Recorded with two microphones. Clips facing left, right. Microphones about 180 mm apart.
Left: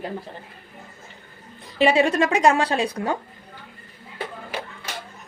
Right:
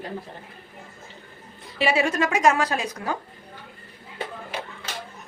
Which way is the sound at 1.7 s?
35° left (ahead or behind).